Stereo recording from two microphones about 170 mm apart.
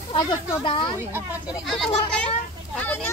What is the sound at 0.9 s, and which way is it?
Speech, 15° right (ahead or behind).